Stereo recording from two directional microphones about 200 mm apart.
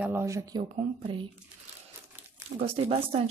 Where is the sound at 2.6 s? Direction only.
30° right (ahead or behind).